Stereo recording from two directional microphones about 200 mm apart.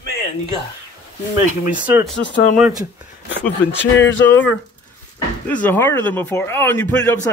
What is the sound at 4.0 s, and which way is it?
Speech, 70° left (ahead or behind).